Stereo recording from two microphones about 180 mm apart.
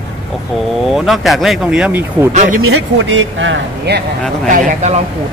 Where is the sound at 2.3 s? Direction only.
40° right (ahead or behind).